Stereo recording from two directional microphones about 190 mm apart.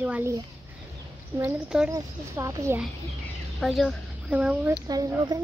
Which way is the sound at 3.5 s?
Centre (ahead or behind).